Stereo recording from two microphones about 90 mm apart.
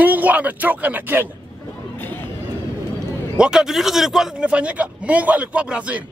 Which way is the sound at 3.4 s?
10° right (ahead or behind).